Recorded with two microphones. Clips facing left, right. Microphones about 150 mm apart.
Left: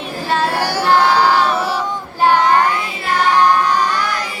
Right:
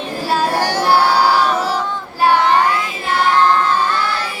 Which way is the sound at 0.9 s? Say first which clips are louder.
Left 1 dB; 10° right (ahead or behind).